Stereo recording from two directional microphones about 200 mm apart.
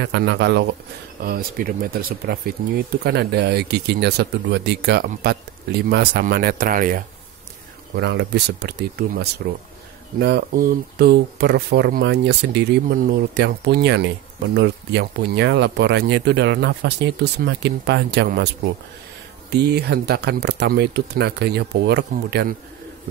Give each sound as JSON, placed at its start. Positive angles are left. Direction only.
{"t": 0.0, "sound": "speech", "side_deg": -60}
{"t": 1.2, "sound": "speech", "side_deg": -45}
{"t": 7.9, "sound": "speech", "side_deg": -60}
{"t": 19.5, "sound": "speech", "side_deg": -55}